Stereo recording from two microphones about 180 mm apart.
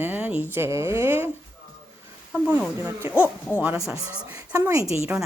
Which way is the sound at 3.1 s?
10° left (ahead or behind).